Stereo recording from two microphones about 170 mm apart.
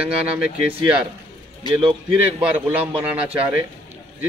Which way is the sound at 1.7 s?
30° right (ahead or behind).